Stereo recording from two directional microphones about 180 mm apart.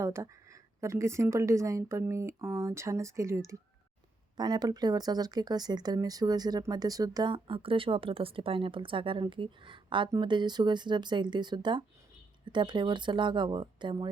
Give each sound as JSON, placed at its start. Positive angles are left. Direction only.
{"t": 0.0, "sound": "a woman's voice", "side_deg": -15}